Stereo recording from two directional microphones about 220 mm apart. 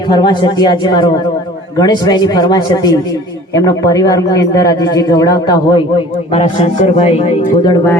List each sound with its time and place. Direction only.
0.1 s a man's voice: 20° left (ahead or behind)
6.3 s a man's voice: 30° left (ahead or behind)